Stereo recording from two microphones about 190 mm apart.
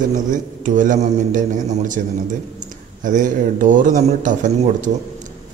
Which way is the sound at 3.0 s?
45° right (ahead or behind).